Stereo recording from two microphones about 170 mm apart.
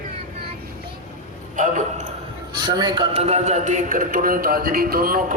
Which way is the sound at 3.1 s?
40° right (ahead or behind).